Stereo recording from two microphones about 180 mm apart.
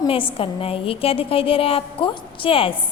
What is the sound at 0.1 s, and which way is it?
A woman's voice, 30° left (ahead or behind).